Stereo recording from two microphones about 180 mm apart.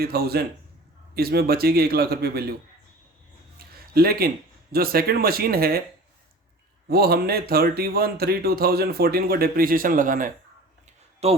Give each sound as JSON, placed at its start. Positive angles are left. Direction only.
{"t": 0.0, "sound": "speech", "side_deg": -60}
{"t": 3.9, "sound": "speech", "side_deg": -55}
{"t": 6.8, "sound": "speech", "side_deg": -60}
{"t": 11.2, "sound": "a man's voice", "side_deg": -35}